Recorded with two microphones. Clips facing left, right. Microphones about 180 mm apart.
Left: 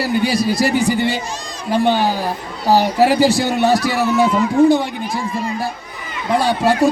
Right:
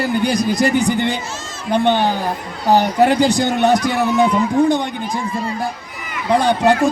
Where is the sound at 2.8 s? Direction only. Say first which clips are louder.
Left 1 dB; 5° left (ahead or behind).